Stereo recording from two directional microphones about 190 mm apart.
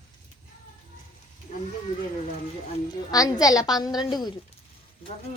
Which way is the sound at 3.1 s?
20° left (ahead or behind).